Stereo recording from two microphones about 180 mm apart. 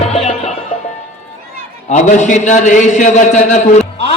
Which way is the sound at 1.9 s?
40° left (ahead or behind).